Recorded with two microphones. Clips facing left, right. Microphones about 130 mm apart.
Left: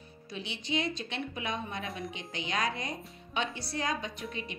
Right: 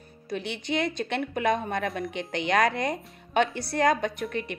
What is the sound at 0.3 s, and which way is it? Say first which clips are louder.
Speech: right 6 dB; 60° right (ahead or behind).